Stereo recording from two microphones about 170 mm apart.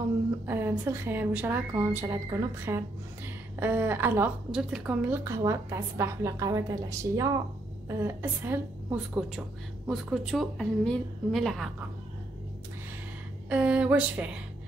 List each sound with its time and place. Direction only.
0.5 s a woman's voice: 15° right (ahead or behind)
13.5 s a woman's voice: 5° right (ahead or behind)